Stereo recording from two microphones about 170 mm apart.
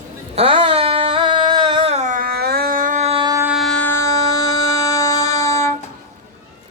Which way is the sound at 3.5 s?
5° left (ahead or behind).